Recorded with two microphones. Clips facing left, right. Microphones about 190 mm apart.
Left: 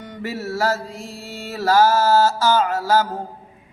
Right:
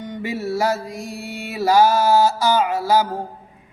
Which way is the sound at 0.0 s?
15° right (ahead or behind).